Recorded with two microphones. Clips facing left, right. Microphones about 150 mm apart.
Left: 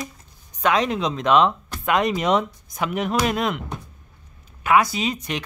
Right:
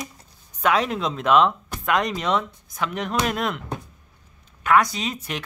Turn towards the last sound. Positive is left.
turn(degrees=0)  # may be behind; listen again after turning